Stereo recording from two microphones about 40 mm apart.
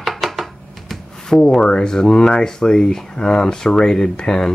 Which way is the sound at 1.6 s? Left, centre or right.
Centre.